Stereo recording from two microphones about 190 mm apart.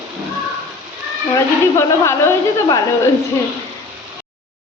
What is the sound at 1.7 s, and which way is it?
A woman's voice, 15° left (ahead or behind).